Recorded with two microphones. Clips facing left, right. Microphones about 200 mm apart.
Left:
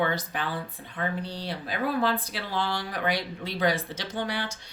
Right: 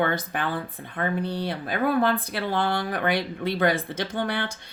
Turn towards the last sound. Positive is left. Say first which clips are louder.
# right 3 dB
turn(degrees=-55)  # may be behind; listen again after turning